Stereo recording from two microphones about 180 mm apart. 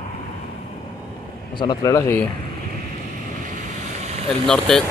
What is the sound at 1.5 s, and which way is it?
Speech, 25° left (ahead or behind).